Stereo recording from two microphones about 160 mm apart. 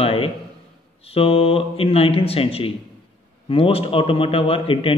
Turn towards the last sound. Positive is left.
turn(degrees=35)  # may be behind; listen again after turning